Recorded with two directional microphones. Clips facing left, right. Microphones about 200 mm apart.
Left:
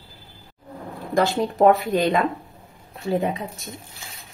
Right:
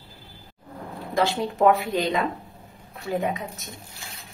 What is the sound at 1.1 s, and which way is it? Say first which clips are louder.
Speech: left 3 dB; 45° left (ahead or behind).